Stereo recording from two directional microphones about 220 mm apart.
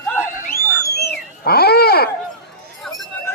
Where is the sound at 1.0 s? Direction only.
45° left (ahead or behind).